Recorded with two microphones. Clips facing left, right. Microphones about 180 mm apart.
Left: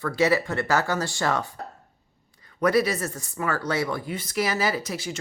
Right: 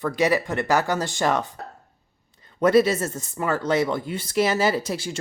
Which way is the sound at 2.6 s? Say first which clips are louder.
Right 4 dB; 25° right (ahead or behind).